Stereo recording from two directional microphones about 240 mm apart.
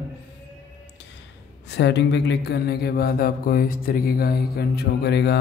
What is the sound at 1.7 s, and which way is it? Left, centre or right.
Mantra, left.